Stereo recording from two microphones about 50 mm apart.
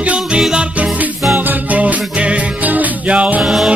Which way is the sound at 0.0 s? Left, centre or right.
Right.